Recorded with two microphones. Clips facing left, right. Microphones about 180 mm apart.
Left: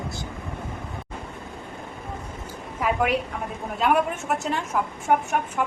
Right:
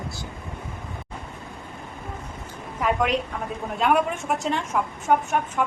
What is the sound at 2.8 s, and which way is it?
A woman's voice, 5° left (ahead or behind).